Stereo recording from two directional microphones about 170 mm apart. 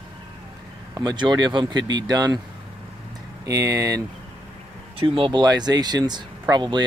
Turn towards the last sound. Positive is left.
turn(degrees=-25)  # may be behind; listen again after turning